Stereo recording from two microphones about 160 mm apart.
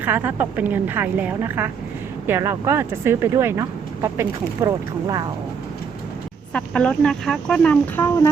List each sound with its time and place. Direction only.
0.0 s speech: 10° right (ahead or behind)
6.5 s speech: 5° left (ahead or behind)